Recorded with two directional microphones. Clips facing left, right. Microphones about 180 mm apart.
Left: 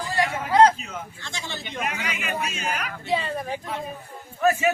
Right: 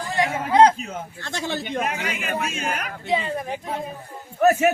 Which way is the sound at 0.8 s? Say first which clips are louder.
Right 4 dB; 50° right (ahead or behind).